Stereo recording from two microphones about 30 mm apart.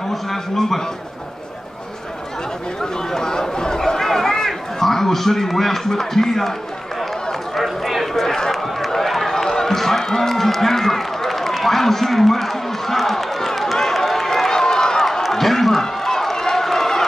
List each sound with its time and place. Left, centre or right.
0.1 s a man's voice: centre
2.8 s speech: centre
7.5 s a sound: centre
8.5 s run: centre
15.3 s a sound: centre
16.0 s run: centre